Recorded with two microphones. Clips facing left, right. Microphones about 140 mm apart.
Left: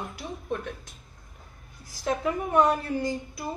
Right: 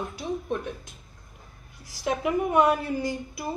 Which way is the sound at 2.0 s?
10° right (ahead or behind).